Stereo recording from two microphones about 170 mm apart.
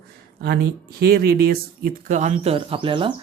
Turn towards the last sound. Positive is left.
turn(degrees=-30)  # may be behind; listen again after turning